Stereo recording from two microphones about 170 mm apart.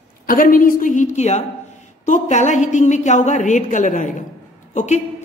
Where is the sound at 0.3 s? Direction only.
55° left (ahead or behind).